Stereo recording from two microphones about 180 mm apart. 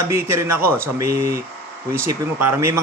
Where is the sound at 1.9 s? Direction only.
15° right (ahead or behind).